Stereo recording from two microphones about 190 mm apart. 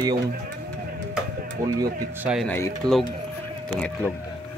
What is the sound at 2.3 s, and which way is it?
Speech, 5° left (ahead or behind).